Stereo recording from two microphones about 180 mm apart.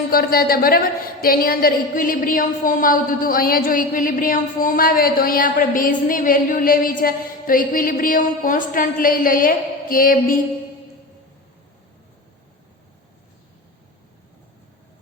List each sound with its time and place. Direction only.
0.1 s a woman's voice: 55° left (ahead or behind)